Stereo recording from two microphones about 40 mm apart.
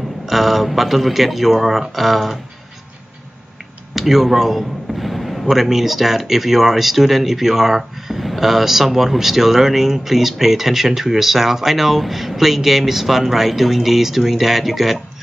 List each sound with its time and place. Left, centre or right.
0.3 s a man's voice: centre
3.9 s a man's voice: centre